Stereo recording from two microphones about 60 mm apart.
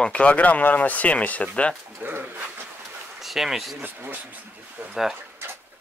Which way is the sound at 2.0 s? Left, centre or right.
Right.